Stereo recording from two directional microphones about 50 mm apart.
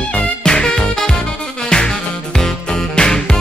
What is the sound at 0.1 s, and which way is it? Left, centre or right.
Music, centre.